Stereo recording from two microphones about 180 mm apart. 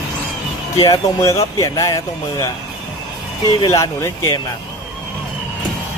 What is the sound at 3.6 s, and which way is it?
Speech, 15° left (ahead or behind).